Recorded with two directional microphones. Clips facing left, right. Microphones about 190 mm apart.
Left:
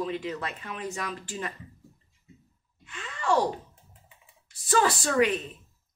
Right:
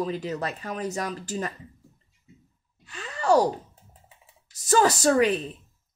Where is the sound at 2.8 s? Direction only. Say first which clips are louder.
Right 4 dB; 40° right (ahead or behind).